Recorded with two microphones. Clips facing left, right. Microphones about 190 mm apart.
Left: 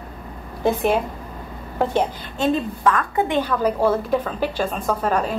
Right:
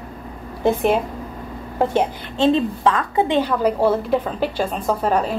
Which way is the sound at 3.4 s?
10° right (ahead or behind).